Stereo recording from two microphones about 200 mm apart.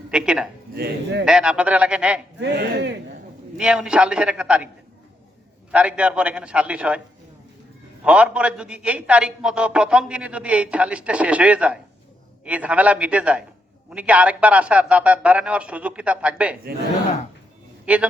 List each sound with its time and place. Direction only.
0.1 s a man's voice: 5° right (ahead or behind)
0.8 s a man's voice: 55° right (ahead or behind)
1.2 s a man's voice: 5° right (ahead or behind)
2.4 s speech: 60° right (ahead or behind)
3.6 s a man's voice: 5° right (ahead or behind)
5.7 s a man's voice: 5° right (ahead or behind)
8.0 s a man's voice: 5° right (ahead or behind)
17.8 s a man's voice: 5° right (ahead or behind)